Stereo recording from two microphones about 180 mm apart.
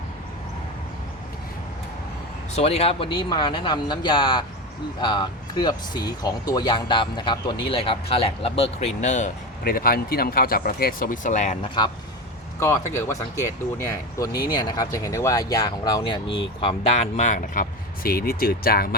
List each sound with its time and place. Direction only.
2.6 s speech: 35° left (ahead or behind)
12.5 s speech: 15° left (ahead or behind); by 18.9 s 55° left (ahead or behind)